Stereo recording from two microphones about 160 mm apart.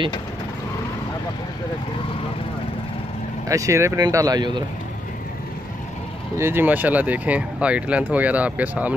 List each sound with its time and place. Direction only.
3.4 s speech: 20° right (ahead or behind)
6.3 s speech: 15° right (ahead or behind)